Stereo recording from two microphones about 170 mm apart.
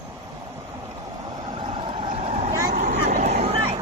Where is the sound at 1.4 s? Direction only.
30° right (ahead or behind).